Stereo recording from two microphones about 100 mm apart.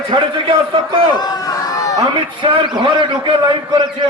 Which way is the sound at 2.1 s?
55° right (ahead or behind).